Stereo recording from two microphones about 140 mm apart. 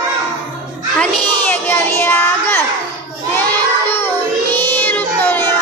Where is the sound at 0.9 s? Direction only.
10° left (ahead or behind).